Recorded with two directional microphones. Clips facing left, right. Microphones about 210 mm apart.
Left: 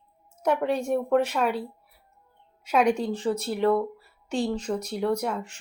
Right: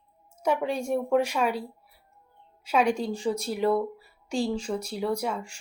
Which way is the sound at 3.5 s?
10° right (ahead or behind).